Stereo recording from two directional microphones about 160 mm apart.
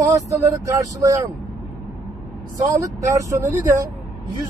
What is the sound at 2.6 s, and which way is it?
Speech, 20° right (ahead or behind).